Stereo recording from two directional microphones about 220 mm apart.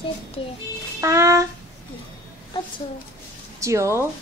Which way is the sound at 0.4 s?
25° left (ahead or behind).